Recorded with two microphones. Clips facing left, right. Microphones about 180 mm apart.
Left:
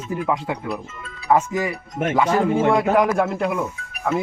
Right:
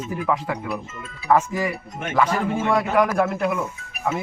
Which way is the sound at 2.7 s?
25° left (ahead or behind).